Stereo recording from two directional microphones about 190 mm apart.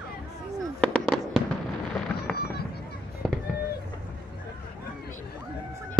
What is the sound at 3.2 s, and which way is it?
Fireworks, centre (ahead or behind).